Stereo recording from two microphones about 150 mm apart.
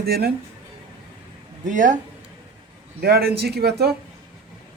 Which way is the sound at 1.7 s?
55° right (ahead or behind).